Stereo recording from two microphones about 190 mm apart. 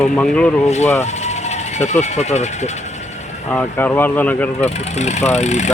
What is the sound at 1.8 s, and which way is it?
Speech, 35° left (ahead or behind).